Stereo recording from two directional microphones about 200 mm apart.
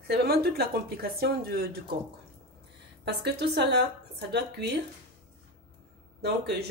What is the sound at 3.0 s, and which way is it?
A woman's voice, 55° right (ahead or behind).